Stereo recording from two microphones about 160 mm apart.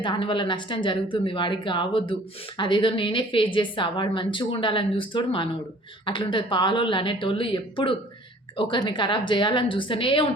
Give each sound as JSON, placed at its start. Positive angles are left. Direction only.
{"t": 0.0, "sound": "a woman's voice", "side_deg": 30}